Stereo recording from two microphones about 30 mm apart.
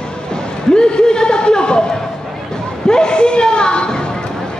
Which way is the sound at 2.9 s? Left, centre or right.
Left.